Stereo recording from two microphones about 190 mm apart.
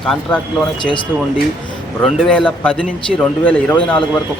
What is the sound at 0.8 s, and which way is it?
Speech, 25° left (ahead or behind).